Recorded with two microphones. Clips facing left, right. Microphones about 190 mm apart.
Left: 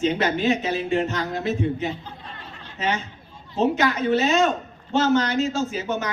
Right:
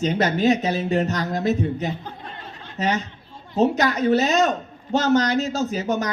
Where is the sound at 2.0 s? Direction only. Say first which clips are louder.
Right 3 dB; 55° right (ahead or behind).